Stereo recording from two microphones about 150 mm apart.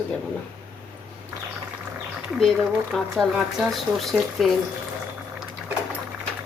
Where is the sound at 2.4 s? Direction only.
Centre (ahead or behind).